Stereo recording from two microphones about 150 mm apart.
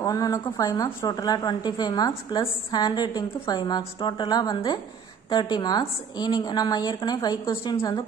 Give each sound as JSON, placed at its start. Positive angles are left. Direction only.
{"t": 0.0, "sound": "a woman's voice", "side_deg": 25}